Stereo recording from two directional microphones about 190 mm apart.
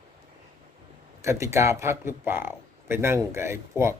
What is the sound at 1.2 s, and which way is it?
Speech, 15° right (ahead or behind).